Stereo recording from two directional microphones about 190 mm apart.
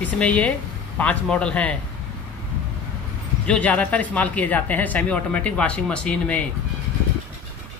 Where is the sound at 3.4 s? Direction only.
5° left (ahead or behind).